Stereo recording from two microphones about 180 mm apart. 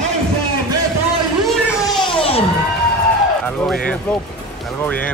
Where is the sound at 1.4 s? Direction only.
Centre (ahead or behind).